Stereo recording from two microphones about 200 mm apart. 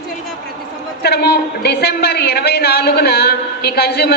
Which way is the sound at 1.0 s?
55° left (ahead or behind).